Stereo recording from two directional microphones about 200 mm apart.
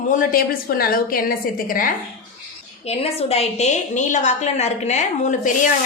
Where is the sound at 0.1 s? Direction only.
45° left (ahead or behind).